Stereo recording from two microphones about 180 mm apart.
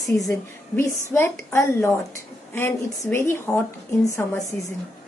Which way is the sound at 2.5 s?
10° left (ahead or behind).